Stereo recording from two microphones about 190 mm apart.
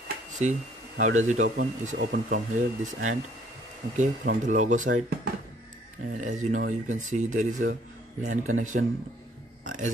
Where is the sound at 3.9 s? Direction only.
40° right (ahead or behind).